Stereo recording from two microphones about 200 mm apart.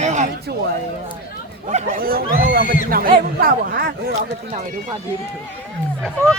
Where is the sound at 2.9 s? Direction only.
45° right (ahead or behind).